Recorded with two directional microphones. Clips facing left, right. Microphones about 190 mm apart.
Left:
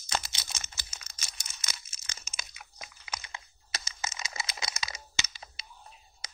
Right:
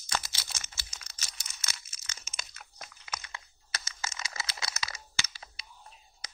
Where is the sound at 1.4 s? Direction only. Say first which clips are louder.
Even; 15° left (ahead or behind).